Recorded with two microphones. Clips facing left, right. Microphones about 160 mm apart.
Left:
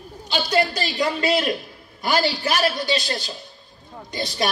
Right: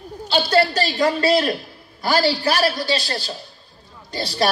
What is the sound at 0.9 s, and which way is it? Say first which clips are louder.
A man's voice: right 4 dB; 40° right (ahead or behind).